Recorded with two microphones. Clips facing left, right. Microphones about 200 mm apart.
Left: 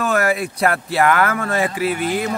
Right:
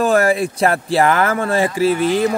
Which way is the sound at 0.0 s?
30° right (ahead or behind).